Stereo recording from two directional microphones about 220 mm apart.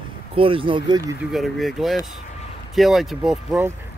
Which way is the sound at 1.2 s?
Centre (ahead or behind).